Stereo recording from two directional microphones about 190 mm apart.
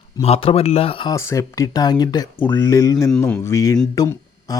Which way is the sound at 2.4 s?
10° left (ahead or behind).